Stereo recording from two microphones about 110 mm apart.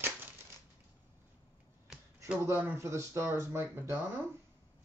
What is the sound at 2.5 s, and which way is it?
Speech, 20° right (ahead or behind).